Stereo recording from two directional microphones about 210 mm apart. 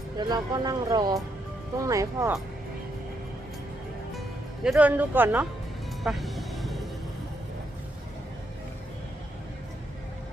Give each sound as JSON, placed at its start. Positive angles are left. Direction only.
{"t": 0.2, "sound": "speech", "side_deg": -20}
{"t": 4.6, "sound": "speech", "side_deg": -5}
{"t": 6.0, "sound": "music", "side_deg": 0}